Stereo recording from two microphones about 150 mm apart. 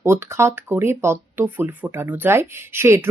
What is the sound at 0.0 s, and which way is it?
Speech, 15° right (ahead or behind).